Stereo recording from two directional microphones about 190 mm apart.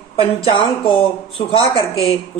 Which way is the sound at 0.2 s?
30° left (ahead or behind).